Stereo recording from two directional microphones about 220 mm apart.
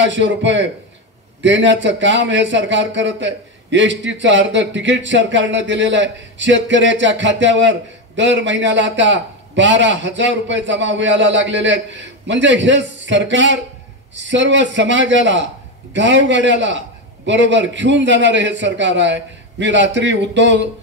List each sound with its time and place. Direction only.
0.0 s a man's voice: 55° right (ahead or behind)